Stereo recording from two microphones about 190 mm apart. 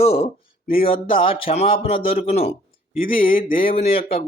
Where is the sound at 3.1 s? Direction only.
50° left (ahead or behind).